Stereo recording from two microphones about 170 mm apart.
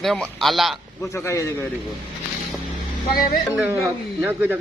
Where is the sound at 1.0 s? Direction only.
15° left (ahead or behind).